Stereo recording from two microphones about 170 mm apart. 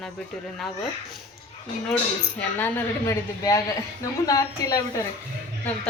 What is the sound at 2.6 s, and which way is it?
A woman's voice, 15° left (ahead or behind).